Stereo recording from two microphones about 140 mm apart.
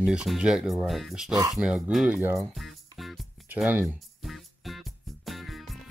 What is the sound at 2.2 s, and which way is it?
Speech, 15° right (ahead or behind).